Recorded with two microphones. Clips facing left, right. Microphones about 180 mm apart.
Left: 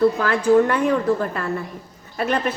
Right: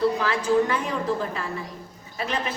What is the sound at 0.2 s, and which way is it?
A woman's voice, 50° left (ahead or behind).